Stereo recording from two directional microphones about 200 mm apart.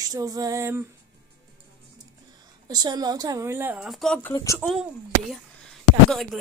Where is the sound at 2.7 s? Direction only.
20° right (ahead or behind); by 4.3 s centre (ahead or behind).